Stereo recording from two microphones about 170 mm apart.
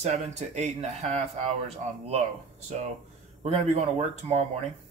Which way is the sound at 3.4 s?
40° right (ahead or behind).